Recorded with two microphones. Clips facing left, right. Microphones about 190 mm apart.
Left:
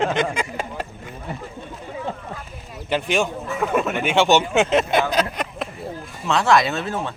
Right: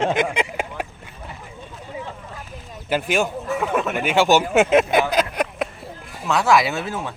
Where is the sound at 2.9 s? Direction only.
5° right (ahead or behind).